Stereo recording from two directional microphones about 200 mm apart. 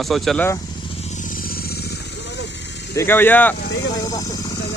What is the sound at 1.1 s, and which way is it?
Vehicle, 40° left (ahead or behind).